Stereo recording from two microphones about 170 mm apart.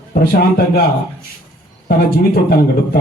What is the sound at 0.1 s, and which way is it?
Speech, 65° left (ahead or behind).